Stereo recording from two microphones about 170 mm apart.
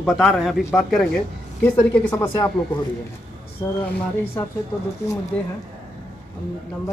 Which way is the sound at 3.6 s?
25° left (ahead or behind).